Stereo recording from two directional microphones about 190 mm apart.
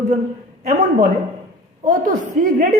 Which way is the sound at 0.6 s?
40° right (ahead or behind).